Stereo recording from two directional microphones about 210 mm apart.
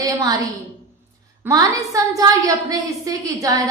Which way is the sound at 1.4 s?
15° right (ahead or behind).